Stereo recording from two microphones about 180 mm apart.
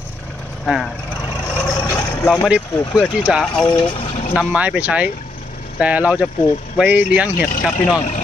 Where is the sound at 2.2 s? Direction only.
5° left (ahead or behind).